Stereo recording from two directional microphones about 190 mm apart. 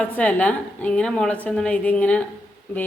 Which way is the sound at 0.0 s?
10° left (ahead or behind).